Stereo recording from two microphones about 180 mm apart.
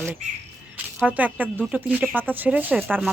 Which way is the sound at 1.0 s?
10° right (ahead or behind).